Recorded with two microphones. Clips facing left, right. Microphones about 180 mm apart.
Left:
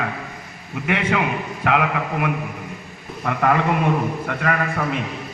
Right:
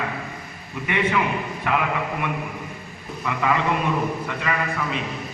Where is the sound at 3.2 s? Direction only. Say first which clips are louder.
Left 3 dB; 55° left (ahead or behind).